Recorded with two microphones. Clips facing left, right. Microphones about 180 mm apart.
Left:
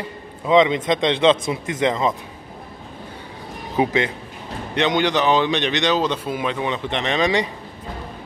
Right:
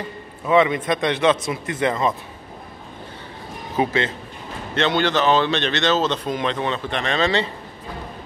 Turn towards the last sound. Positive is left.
turn(degrees=15)  # may be behind; listen again after turning